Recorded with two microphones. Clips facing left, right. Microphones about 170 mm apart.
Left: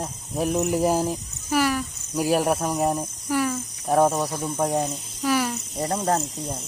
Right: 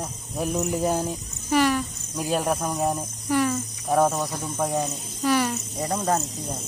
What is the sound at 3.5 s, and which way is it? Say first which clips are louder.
Cricket: left 1 dB; centre (ahead or behind).